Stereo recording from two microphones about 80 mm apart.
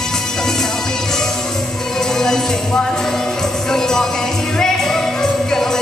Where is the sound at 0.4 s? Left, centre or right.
Centre.